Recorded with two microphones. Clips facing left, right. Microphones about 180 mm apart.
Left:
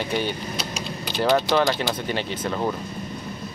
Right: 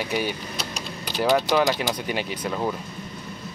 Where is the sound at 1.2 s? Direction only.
10° right (ahead or behind).